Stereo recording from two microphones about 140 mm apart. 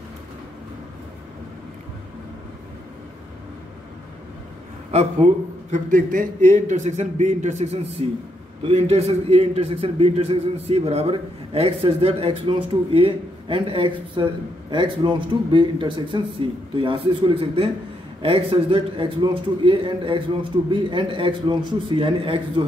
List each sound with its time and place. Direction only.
5.7 s a man's voice: 70° right (ahead or behind)
6.5 s a man's voice: 55° right (ahead or behind); by 22.7 s 35° right (ahead or behind)